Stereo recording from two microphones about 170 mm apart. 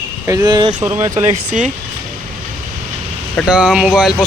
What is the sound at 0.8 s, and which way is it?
Speech, 10° right (ahead or behind).